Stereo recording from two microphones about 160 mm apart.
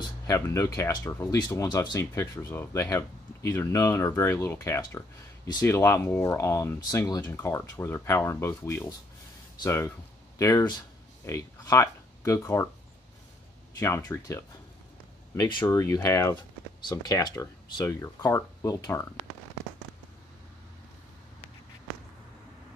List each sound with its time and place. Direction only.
0.3 s speech: 20° left (ahead or behind)
13.7 s speech: 20° left (ahead or behind)
15.6 s speech: 20° left (ahead or behind)